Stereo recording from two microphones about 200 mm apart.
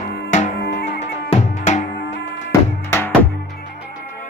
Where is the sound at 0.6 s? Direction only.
55° left (ahead or behind).